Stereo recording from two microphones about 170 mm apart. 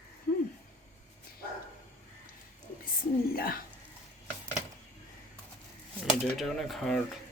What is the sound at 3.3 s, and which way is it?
Speech, 60° left (ahead or behind).